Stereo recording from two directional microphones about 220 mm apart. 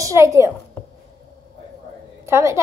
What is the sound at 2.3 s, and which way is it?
Speech, 10° right (ahead or behind).